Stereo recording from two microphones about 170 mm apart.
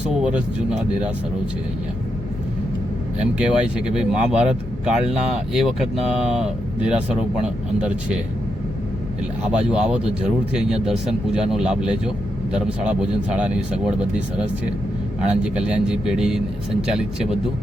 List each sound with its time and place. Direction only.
0.2 s speech: 5° right (ahead or behind)
3.2 s speech: 5° right (ahead or behind)
9.4 s speech: 5° right (ahead or behind)
15.4 s speech: 5° right (ahead or behind)